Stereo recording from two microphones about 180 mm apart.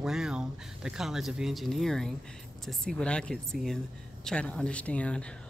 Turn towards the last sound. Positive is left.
turn(degrees=5)  # may be behind; listen again after turning